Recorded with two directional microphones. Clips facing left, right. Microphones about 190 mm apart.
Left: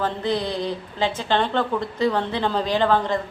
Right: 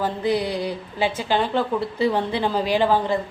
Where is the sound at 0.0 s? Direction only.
10° right (ahead or behind).